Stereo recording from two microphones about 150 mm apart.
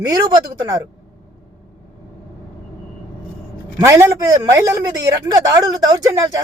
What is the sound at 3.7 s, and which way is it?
Speech, 20° right (ahead or behind).